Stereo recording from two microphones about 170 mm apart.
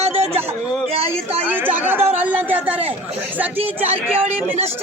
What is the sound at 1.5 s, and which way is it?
Speech, 10° right (ahead or behind).